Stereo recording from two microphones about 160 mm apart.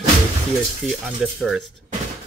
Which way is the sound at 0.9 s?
Centre (ahead or behind).